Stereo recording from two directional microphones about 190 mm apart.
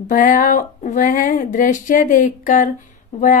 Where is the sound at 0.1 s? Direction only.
45° left (ahead or behind).